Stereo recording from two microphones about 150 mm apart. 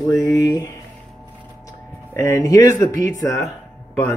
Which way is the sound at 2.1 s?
20° left (ahead or behind).